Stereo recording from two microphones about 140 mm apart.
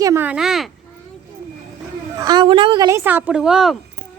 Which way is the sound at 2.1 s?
30° right (ahead or behind).